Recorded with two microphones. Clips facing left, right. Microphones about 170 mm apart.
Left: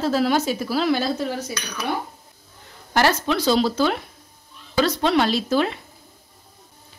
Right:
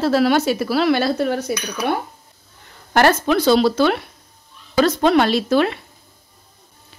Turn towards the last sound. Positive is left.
turn(degrees=-70)  # may be behind; listen again after turning